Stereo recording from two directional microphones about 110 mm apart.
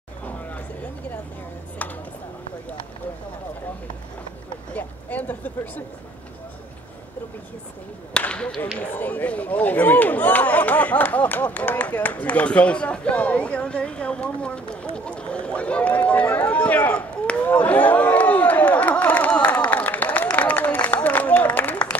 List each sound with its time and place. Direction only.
4.7 s speech: 15° left (ahead or behind)
8.1 s speech: 10° left (ahead or behind)
15.0 s run: 10° left (ahead or behind)